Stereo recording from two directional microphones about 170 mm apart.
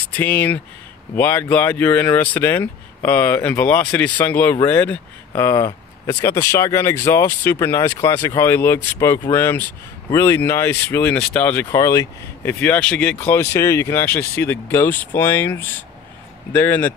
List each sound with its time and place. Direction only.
0.0 s speech: 10° left (ahead or behind)